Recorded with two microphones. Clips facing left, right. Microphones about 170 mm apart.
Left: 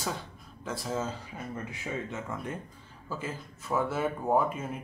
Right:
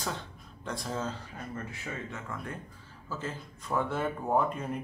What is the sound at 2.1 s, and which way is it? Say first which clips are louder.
Speech: left 3 dB; 20° left (ahead or behind).